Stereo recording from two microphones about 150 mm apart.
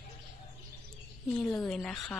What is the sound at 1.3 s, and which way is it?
Speech, 10° left (ahead or behind).